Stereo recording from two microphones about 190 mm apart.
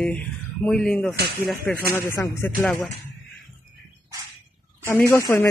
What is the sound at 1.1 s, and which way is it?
Speech, 55° right (ahead or behind).